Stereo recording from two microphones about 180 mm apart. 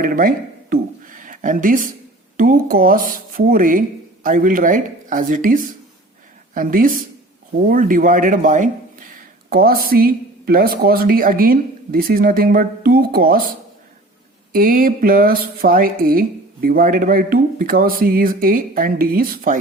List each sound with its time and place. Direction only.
0.0 s a sound: 50° right (ahead or behind)
2.4 s speech: 50° right (ahead or behind)
9.1 s speech: 55° right (ahead or behind)
14.5 s speech: 55° right (ahead or behind)